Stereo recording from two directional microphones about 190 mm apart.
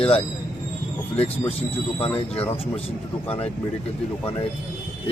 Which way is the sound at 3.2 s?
30° left (ahead or behind).